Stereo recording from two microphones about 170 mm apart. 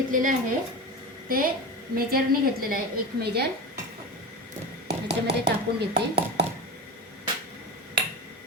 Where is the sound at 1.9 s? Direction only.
60° right (ahead or behind).